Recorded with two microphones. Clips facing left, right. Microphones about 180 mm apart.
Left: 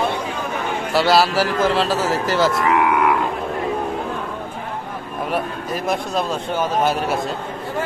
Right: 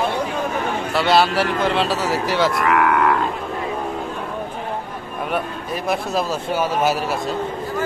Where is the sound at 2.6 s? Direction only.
20° left (ahead or behind).